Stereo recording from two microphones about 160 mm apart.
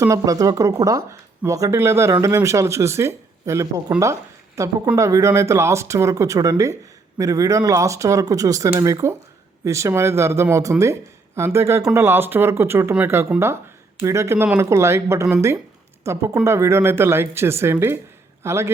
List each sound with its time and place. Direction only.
0.0 s speech: 20° right (ahead or behind)